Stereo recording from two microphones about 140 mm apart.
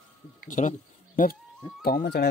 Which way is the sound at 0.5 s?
65° left (ahead or behind).